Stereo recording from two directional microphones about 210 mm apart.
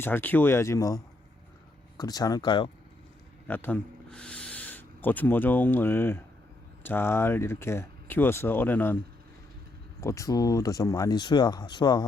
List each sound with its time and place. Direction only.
0.0 s speech: 10° left (ahead or behind)
3.4 s speech: 10° left (ahead or behind)
10.0 s speech: 15° left (ahead or behind)